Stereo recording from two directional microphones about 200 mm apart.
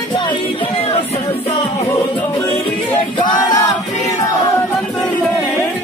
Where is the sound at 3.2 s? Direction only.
20° left (ahead or behind).